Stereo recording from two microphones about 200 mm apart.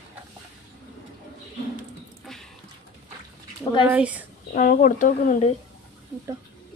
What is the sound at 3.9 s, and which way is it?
Speech, 5° right (ahead or behind).